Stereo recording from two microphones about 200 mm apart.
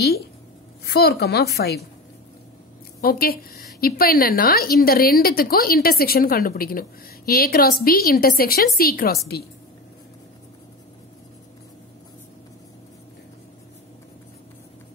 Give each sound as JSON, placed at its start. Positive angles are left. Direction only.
{"t": 0.8, "sound": "a woman's voice", "side_deg": 50}
{"t": 3.0, "sound": "a woman's voice", "side_deg": 50}